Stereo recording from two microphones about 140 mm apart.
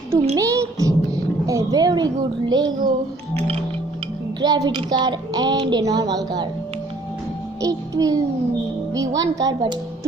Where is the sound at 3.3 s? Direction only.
45° right (ahead or behind).